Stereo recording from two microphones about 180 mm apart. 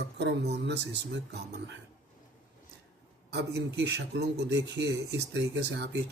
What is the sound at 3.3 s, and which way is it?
Speech, 65° right (ahead or behind).